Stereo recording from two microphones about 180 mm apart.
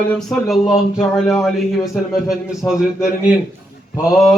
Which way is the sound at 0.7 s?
20° left (ahead or behind).